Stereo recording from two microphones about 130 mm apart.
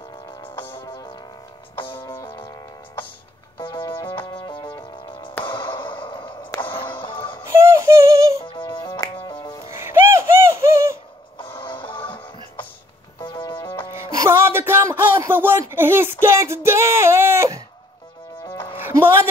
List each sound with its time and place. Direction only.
0.7 s music: 20° left (ahead or behind)
3.5 s music: 40° left (ahead or behind)
5.4 s a sound: 40° left (ahead or behind)
6.6 s music: 40° left (ahead or behind)
7.4 s synthetic singing: 20° right (ahead or behind)
8.5 s music: 40° left (ahead or behind)
9.7 s bird: 20° right (ahead or behind)
11.6 s music: 40° left (ahead or behind)
13.2 s music: 40° left (ahead or behind)
13.9 s music: 25° right (ahead or behind)
18.4 s music: 20° left (ahead or behind)
18.8 s music: 15° right (ahead or behind)